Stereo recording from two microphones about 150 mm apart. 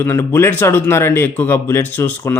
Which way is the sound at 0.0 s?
15° left (ahead or behind).